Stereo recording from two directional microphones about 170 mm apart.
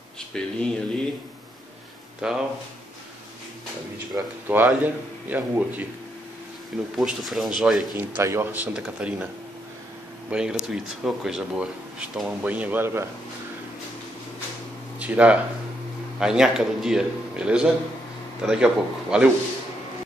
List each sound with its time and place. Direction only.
0.3 s a man's voice: 5° left (ahead or behind)
2.2 s a man's voice: 5° right (ahead or behind)
4.1 s a man's voice: 15° right (ahead or behind)
7.0 s a man's voice: centre (ahead or behind)
8.0 s a man's voice: 15° right (ahead or behind)
10.3 s a man's voice: 5° right (ahead or behind)
15.0 s a man's voice: 10° right (ahead or behind)